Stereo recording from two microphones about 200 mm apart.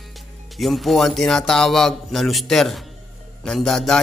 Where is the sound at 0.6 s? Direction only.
Centre (ahead or behind).